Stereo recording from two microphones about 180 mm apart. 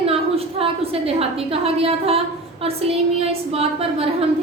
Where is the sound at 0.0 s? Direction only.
35° right (ahead or behind).